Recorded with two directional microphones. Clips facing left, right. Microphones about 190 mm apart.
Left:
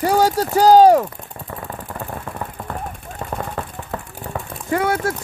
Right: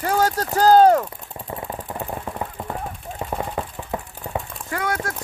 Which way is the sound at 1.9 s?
15° right (ahead or behind).